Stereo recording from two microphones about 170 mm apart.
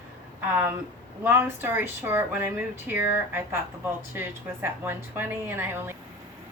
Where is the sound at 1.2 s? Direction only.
10° right (ahead or behind).